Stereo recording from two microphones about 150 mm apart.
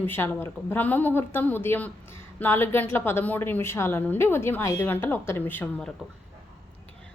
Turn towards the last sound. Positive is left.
turn(degrees=10)  # may be behind; listen again after turning